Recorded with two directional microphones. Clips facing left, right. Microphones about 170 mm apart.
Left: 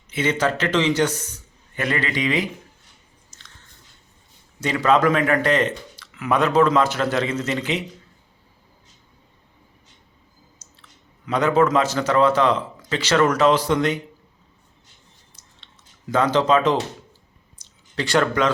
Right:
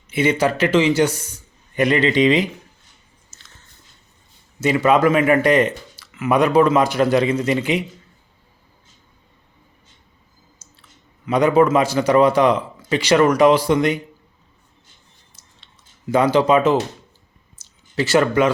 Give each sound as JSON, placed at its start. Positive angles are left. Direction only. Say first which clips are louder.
{"t": 0.1, "sound": "speech", "louder": "right 4 dB", "side_deg": -10}
{"t": 3.2, "sound": "biting", "louder": "left 1 dB", "side_deg": -5}
{"t": 4.6, "sound": "speech", "louder": "right 3 dB", "side_deg": -10}
{"t": 10.6, "sound": "chewing", "louder": "right 1 dB", "side_deg": -10}
{"t": 11.3, "sound": "speech", "louder": "right 4 dB", "side_deg": -10}
{"t": 15.4, "sound": "a sound", "louder": "even", "side_deg": -10}